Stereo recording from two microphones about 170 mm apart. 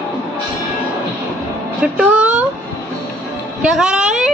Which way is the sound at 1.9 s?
5° right (ahead or behind).